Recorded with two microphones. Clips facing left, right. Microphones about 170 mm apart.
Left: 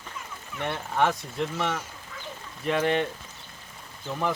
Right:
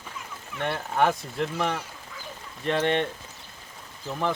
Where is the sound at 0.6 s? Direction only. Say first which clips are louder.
Right 1 dB; centre (ahead or behind).